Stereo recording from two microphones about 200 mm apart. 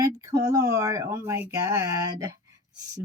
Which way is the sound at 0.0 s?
15° right (ahead or behind).